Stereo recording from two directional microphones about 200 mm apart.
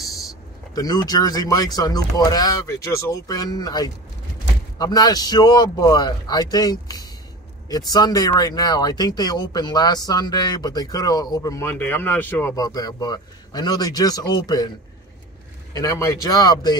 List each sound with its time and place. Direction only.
0.7 s speech: 20° left (ahead or behind)
15.7 s speech: 15° left (ahead or behind)